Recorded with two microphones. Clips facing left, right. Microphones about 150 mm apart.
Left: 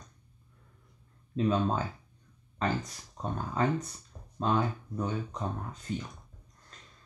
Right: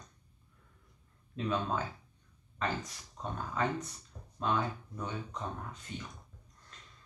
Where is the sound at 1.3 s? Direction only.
35° left (ahead or behind).